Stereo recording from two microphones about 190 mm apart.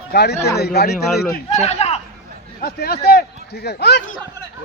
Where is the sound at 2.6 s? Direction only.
55° left (ahead or behind).